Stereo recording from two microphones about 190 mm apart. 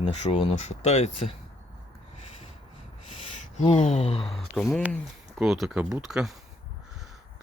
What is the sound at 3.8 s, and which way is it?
Speech, 35° left (ahead or behind).